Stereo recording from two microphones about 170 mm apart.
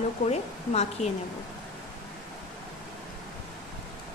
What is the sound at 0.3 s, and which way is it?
Speech, 40° left (ahead or behind).